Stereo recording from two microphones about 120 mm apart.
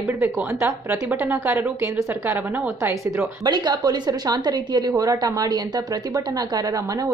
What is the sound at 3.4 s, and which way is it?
A woman's voice, 35° right (ahead or behind).